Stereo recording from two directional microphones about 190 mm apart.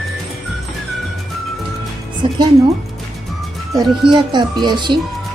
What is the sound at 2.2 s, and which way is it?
Speech, 25° right (ahead or behind).